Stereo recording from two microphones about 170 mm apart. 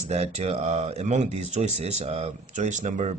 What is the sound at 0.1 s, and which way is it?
Speech, 40° right (ahead or behind).